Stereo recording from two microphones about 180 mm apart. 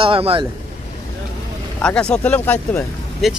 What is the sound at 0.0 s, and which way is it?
Speech, 30° right (ahead or behind).